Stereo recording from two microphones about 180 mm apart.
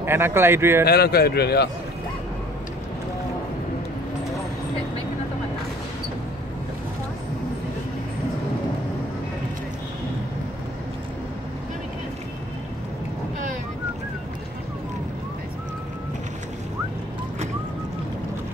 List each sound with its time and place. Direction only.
0.0 s speech: 15° right (ahead or behind)
0.8 s a man's voice: 60° left (ahead or behind)